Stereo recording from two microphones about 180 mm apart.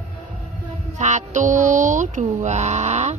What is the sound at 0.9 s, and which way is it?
Speech, 40° right (ahead or behind).